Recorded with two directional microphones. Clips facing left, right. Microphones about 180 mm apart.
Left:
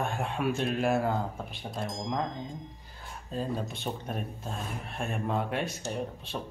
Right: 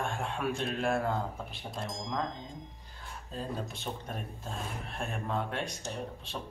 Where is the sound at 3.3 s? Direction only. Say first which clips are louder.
Left 5 dB; centre (ahead or behind).